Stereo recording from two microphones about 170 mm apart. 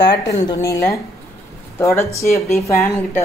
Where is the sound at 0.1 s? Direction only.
20° left (ahead or behind).